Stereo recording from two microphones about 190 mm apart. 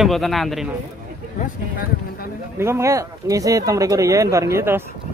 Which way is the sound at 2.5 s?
15° right (ahead or behind).